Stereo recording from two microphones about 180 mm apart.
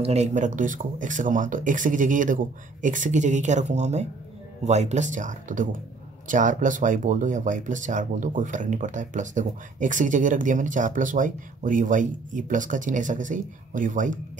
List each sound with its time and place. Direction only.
0.0 s speech: 35° right (ahead or behind)